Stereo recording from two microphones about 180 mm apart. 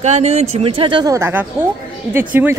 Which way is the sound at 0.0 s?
40° right (ahead or behind).